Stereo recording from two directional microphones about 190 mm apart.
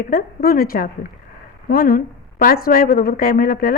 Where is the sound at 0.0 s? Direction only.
50° left (ahead or behind).